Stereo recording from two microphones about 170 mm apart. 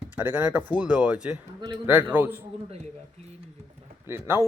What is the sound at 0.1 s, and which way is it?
A man's voice, 10° right (ahead or behind).